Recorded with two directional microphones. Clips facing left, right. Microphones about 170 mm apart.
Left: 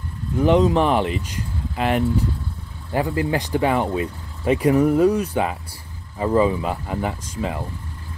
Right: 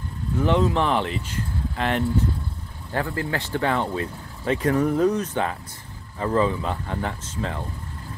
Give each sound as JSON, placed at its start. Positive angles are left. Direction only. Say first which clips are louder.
{"t": 0.4, "sound": "speech", "louder": "left 5 dB", "side_deg": 15}